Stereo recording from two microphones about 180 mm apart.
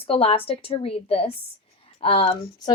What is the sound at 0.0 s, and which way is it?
Speech, 30° left (ahead or behind).